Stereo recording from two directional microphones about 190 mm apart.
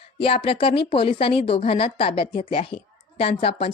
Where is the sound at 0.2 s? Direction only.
30° left (ahead or behind).